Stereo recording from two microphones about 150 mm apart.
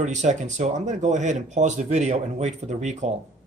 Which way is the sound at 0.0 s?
50° right (ahead or behind).